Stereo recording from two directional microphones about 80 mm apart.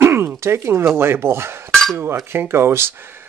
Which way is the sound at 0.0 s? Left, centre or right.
Right.